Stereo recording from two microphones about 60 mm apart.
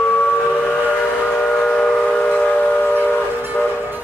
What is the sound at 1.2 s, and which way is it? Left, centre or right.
Train, left.